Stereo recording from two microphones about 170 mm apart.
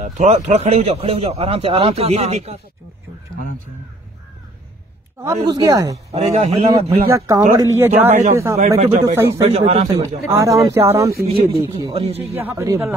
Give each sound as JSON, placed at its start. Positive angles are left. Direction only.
{"t": 0.0, "sound": "a man's voice", "side_deg": -45}
{"t": 5.2, "sound": "speech", "side_deg": -20}
{"t": 6.1, "sound": "a man's voice", "side_deg": -35}
{"t": 7.1, "sound": "speech", "side_deg": -20}
{"t": 8.1, "sound": "speech", "side_deg": -40}
{"t": 9.0, "sound": "speech", "side_deg": -15}
{"t": 9.4, "sound": "a man's voice", "side_deg": -35}
{"t": 9.8, "sound": "speech", "side_deg": -20}
{"t": 11.9, "sound": "a man's voice", "side_deg": -35}
{"t": 12.4, "sound": "speech", "side_deg": -15}